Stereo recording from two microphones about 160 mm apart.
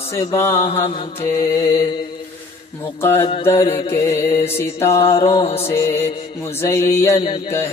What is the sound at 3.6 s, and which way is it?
Mantra, 35° left (ahead or behind).